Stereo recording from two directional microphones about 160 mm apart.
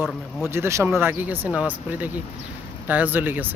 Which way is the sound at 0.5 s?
15° right (ahead or behind).